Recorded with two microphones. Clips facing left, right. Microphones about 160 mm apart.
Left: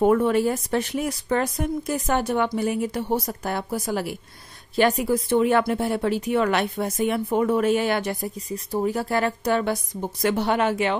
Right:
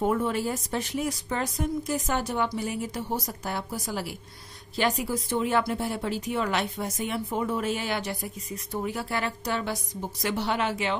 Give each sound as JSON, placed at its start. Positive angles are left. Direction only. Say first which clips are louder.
{"t": 0.0, "sound": "speech", "louder": "left 7 dB", "side_deg": 65}
{"t": 8.5, "sound": "a woman's voice", "louder": "left 7 dB", "side_deg": 35}